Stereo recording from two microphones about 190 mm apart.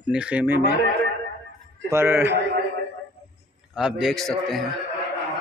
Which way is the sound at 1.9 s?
10° right (ahead or behind).